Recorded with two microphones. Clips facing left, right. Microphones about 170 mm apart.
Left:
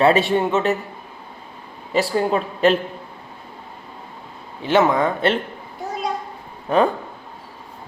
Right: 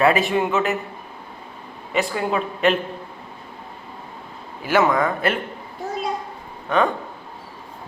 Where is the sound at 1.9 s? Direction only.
35° left (ahead or behind).